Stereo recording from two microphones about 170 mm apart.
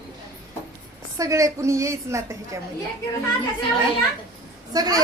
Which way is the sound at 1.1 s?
20° right (ahead or behind).